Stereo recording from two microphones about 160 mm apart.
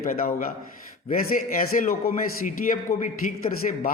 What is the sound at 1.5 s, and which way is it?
A man's voice, 60° left (ahead or behind).